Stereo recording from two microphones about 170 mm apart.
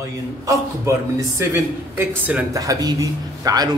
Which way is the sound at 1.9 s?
10° right (ahead or behind).